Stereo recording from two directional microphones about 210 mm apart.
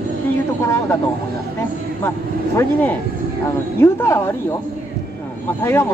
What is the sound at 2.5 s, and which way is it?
Speech, 10° left (ahead or behind).